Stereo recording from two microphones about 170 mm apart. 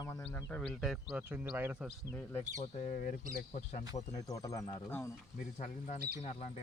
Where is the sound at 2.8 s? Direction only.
50° left (ahead or behind).